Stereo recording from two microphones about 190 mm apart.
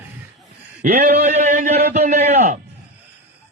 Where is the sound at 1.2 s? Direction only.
40° right (ahead or behind).